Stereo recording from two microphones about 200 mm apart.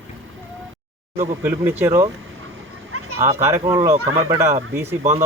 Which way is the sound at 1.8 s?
15° right (ahead or behind).